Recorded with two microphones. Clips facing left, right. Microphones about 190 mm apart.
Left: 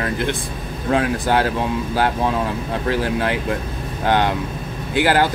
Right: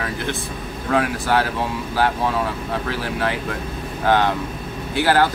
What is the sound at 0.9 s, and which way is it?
Speech, 20° left (ahead or behind).